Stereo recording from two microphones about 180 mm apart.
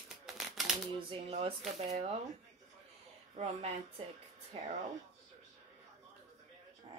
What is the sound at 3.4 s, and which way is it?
Speech, 35° right (ahead or behind).